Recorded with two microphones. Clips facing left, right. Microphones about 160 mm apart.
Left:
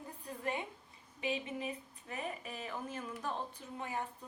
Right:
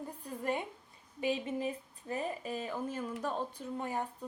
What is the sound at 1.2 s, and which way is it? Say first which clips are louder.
Speech: right 5 dB; 40° right (ahead or behind).